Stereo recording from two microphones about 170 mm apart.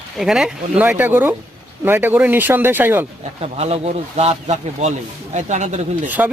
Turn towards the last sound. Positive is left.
turn(degrees=-10)  # may be behind; listen again after turning